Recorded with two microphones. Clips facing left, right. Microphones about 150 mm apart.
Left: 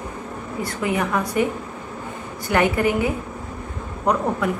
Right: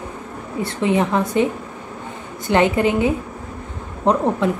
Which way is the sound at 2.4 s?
25° right (ahead or behind).